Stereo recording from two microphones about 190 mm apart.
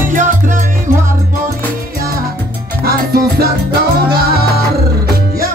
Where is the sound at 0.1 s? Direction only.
45° right (ahead or behind).